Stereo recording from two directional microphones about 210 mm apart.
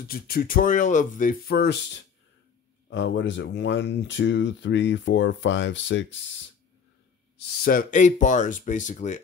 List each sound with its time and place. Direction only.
0.0 s speech: 45° left (ahead or behind); by 6.1 s 60° left (ahead or behind)
7.3 s speech: 45° left (ahead or behind)